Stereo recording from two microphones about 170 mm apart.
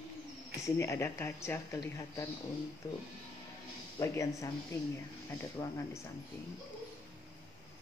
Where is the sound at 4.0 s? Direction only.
20° left (ahead or behind).